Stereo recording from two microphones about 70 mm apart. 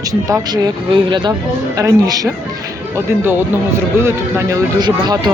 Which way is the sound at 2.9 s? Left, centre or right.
Right.